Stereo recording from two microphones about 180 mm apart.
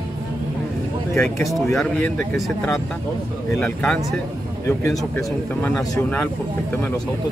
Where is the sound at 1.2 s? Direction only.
15° left (ahead or behind).